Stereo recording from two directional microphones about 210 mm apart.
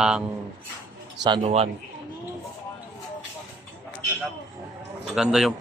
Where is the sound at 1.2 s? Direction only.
25° right (ahead or behind).